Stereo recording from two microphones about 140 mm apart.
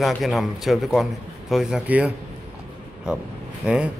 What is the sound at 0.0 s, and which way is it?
A man's voice, centre (ahead or behind).